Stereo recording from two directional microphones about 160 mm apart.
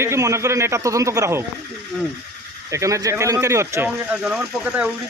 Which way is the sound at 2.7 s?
20° right (ahead or behind).